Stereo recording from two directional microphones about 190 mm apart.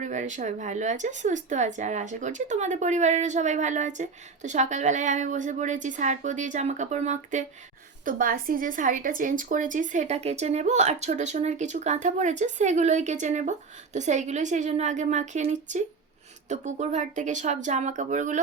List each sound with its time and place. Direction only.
0.0 s a woman's voice: 40° right (ahead or behind)